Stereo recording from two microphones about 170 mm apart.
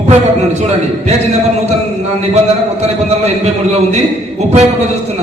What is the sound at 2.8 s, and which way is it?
A man's voice, 40° right (ahead or behind).